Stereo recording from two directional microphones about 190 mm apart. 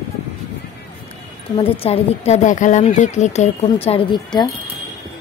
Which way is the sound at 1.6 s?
30° left (ahead or behind).